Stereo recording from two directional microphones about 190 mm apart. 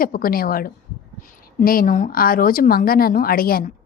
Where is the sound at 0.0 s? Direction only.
50° left (ahead or behind).